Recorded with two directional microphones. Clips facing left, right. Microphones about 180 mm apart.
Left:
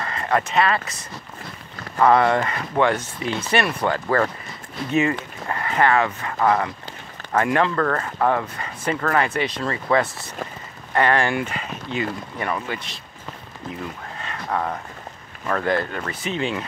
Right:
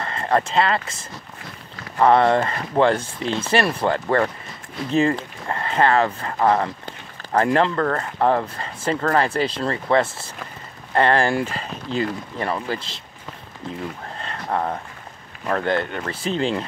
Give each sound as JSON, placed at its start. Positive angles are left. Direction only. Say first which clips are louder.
{"t": 0.0, "sound": "speech", "louder": "right 2 dB", "side_deg": -30}
{"t": 14.2, "sound": "a sound", "louder": "right 1 dB", "side_deg": -25}
{"t": 15.4, "sound": "speech", "louder": "even", "side_deg": -25}